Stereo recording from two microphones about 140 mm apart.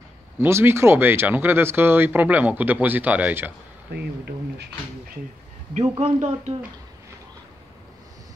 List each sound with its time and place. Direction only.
0.4 s speech: 15° right (ahead or behind)
5.8 s speech: 50° right (ahead or behind)